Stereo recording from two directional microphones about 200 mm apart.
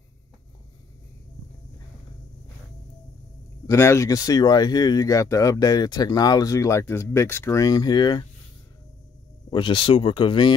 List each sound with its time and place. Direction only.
3.6 s speech: 15° left (ahead or behind)
9.5 s speech: 25° left (ahead or behind)